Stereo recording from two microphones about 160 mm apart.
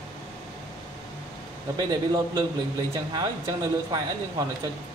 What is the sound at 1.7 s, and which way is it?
Speech, 25° right (ahead or behind).